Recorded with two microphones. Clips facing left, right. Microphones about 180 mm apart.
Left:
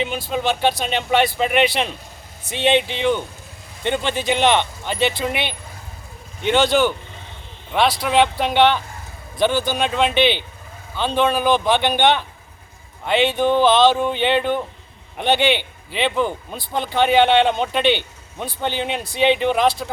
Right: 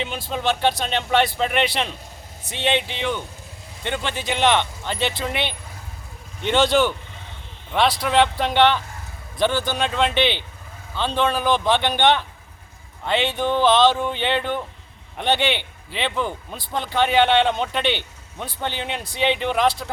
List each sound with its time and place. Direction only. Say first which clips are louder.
0.0 s speech: left 3 dB; 5° left (ahead or behind)